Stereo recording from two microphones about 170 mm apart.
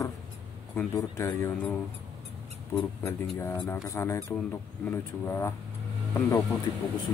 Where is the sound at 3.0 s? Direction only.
15° left (ahead or behind).